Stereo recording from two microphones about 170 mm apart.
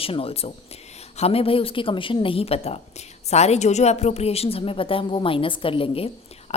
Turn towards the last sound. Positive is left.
turn(degrees=40)  # may be behind; listen again after turning